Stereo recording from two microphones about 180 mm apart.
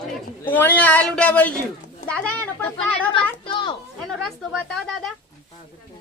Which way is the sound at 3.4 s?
30° left (ahead or behind).